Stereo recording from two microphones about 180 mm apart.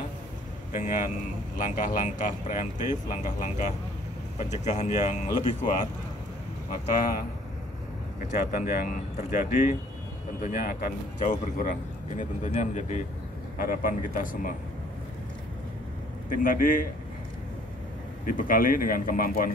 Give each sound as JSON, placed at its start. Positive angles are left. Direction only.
{"t": 0.7, "sound": "speech", "side_deg": 45}
{"t": 6.9, "sound": "speech", "side_deg": 50}
{"t": 16.3, "sound": "speech", "side_deg": 50}
{"t": 18.2, "sound": "speech", "side_deg": 50}